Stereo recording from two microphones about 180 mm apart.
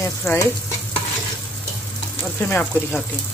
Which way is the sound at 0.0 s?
15° left (ahead or behind).